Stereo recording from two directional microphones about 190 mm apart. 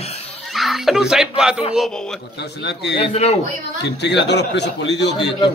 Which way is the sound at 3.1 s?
35° left (ahead or behind).